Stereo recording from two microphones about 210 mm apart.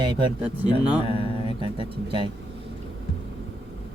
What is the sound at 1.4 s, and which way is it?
Speech, 25° right (ahead or behind).